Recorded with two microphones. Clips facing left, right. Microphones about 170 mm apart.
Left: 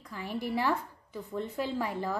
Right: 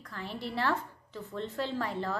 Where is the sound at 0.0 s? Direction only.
10° left (ahead or behind).